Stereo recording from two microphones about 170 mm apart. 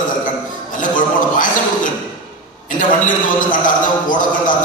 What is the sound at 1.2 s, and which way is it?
A man's voice, 50° left (ahead or behind).